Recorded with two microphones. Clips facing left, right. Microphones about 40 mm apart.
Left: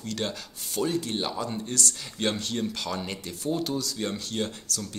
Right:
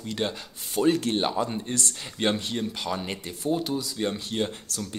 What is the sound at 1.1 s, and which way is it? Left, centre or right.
Speech, right.